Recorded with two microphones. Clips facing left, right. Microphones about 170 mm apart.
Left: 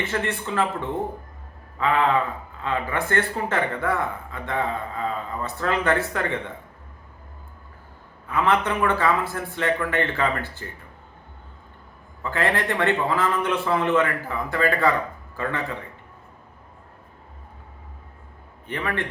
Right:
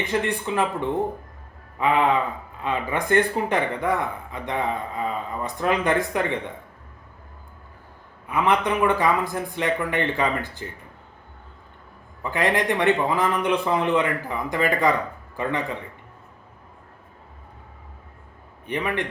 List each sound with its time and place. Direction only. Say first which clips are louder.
0.0 s speech: right 2 dB; 15° right (ahead or behind)
8.3 s speech: right 1 dB; 15° right (ahead or behind)
12.2 s speech: right 1 dB; 15° right (ahead or behind)
18.7 s speech: right 2 dB; 15° right (ahead or behind)